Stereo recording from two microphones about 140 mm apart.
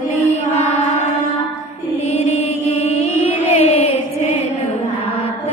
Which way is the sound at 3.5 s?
50° left (ahead or behind).